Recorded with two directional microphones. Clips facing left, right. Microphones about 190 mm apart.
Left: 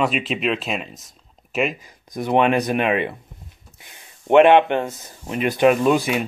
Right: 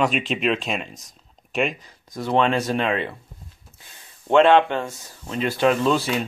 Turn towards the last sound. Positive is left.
turn(degrees=15)  # may be behind; listen again after turning